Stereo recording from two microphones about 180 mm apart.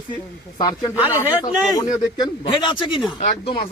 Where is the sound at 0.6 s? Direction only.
20° left (ahead or behind).